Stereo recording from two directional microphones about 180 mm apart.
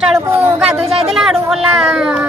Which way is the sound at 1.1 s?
Centre (ahead or behind).